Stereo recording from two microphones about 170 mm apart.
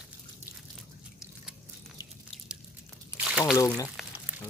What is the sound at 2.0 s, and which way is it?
Drip, 20° left (ahead or behind).